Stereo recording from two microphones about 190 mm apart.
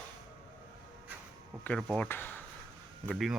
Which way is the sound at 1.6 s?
5° left (ahead or behind).